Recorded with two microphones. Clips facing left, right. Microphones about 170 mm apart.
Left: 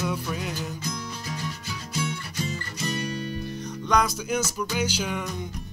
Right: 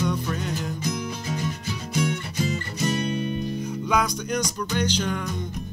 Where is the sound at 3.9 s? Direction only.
Centre (ahead or behind).